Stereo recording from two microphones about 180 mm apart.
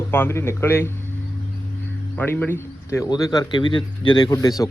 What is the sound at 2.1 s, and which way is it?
Speech, 10° left (ahead or behind).